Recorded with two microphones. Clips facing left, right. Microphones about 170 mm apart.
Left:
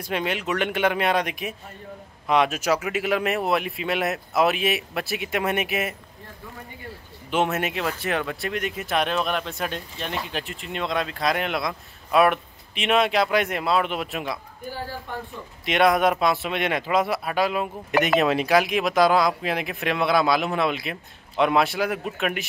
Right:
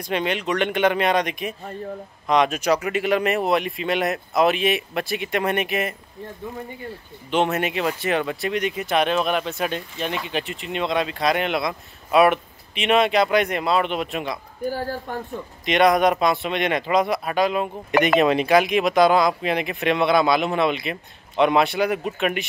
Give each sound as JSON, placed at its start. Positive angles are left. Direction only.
{"t": 0.0, "sound": "speech", "side_deg": 5}
{"t": 7.2, "sound": "speech", "side_deg": 5}
{"t": 14.7, "sound": "speech", "side_deg": -45}
{"t": 15.6, "sound": "speech", "side_deg": 0}